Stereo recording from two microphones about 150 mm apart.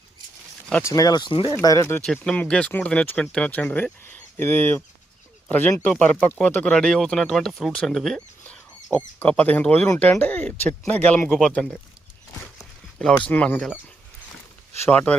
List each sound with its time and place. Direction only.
0.7 s speech: 20° left (ahead or behind)
2.2 s speech: 5° left (ahead or behind)
13.2 s speech: 10° left (ahead or behind)
14.8 s speech: 10° left (ahead or behind)